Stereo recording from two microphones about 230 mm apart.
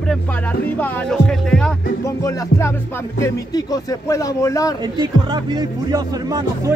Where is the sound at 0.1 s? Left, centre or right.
Centre.